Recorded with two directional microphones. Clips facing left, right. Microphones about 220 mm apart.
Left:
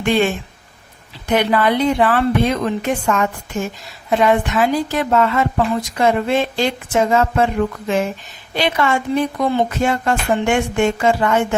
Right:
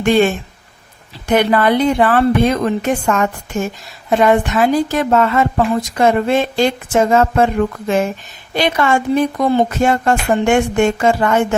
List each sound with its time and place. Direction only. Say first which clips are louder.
0.0 s speech: right 4 dB; 45° right (ahead or behind)
1.3 s a woman's voice: right 3 dB; 50° right (ahead or behind)